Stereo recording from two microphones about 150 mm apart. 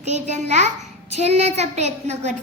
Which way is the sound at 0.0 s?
50° right (ahead or behind).